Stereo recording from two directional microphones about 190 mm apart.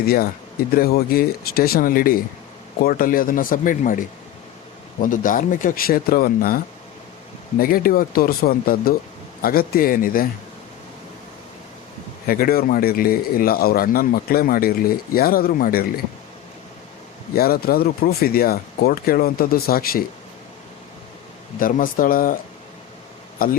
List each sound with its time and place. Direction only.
0.0 s speech: 55° left (ahead or behind)
7.6 s speech: 50° left (ahead or behind)
12.2 s speech: 50° left (ahead or behind)
17.3 s speech: 50° left (ahead or behind)
21.6 s speech: 45° left (ahead or behind)
23.4 s speech: 50° left (ahead or behind)